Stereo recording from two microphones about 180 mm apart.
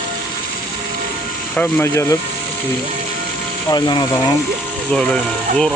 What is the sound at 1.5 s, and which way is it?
Speech, 10° left (ahead or behind).